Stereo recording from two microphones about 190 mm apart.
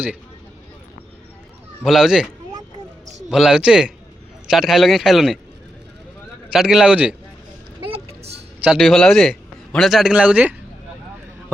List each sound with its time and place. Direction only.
1.8 s a man's voice: centre (ahead or behind)
6.5 s a man's voice: 5° right (ahead or behind)
7.9 s vehicle: 30° right (ahead or behind)
8.6 s a man's voice: centre (ahead or behind)